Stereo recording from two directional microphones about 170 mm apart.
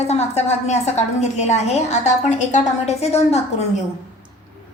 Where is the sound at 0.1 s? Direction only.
40° left (ahead or behind).